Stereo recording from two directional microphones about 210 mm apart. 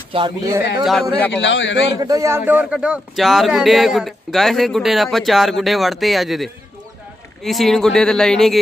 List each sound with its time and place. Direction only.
0.1 s speech: 20° right (ahead or behind)
0.8 s speech: centre (ahead or behind)
1.4 s a man's voice: 60° left (ahead or behind)
2.0 s speech: 15° right (ahead or behind); by 8.5 s centre (ahead or behind)